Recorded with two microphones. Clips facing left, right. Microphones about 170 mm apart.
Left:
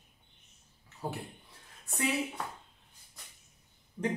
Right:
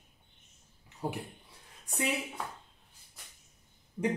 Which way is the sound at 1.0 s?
15° right (ahead or behind).